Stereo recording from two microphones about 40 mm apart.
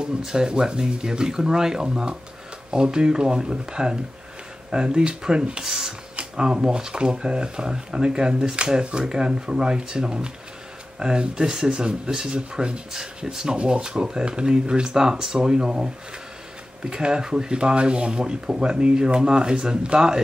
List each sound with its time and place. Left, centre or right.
0.0 s speech: centre
5.7 s a sound: centre
6.1 s speech: right